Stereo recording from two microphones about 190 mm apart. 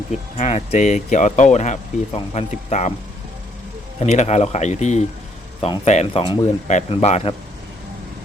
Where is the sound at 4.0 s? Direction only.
35° left (ahead or behind).